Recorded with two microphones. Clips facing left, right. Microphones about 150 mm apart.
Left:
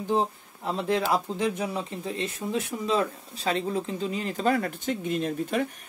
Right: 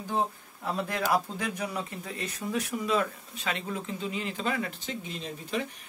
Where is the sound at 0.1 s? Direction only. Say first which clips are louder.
Left 4 dB; 25° left (ahead or behind); by 5.7 s 55° left (ahead or behind).